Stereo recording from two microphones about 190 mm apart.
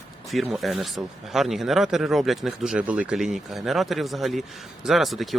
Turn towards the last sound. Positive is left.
turn(degrees=0)  # may be behind; listen again after turning